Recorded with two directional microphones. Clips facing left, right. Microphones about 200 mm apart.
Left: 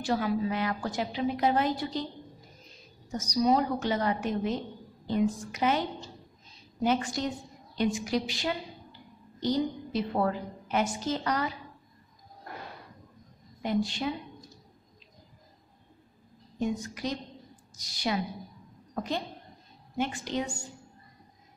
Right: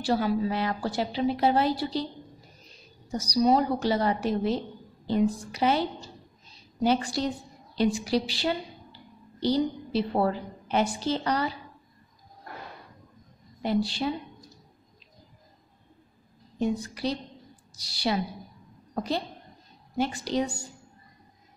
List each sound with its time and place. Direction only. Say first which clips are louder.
0.0 s a woman's voice: right 3 dB; 30° right (ahead or behind)
3.1 s a woman's voice: right 3 dB; 35° right (ahead or behind)
13.6 s a woman's voice: right 2 dB; 35° right (ahead or behind)
16.5 s a woman's voice: right 3 dB; 35° right (ahead or behind)